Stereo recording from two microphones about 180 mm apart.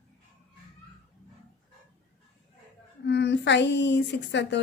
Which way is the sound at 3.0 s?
70° left (ahead or behind).